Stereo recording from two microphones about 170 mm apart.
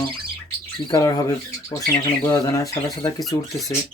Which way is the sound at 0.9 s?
20° left (ahead or behind).